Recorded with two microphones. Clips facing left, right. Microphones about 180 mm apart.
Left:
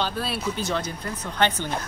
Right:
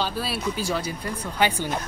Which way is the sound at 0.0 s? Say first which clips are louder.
Even; 5° right (ahead or behind).